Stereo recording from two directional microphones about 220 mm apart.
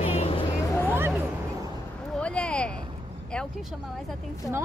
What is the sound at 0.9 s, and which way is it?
Speech, 10° right (ahead or behind).